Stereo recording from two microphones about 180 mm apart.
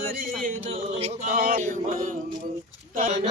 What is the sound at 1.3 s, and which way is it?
Chant, 55° right (ahead or behind).